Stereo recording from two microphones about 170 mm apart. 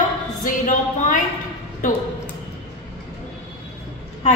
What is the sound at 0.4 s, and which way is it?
A woman's voice, 50° left (ahead or behind).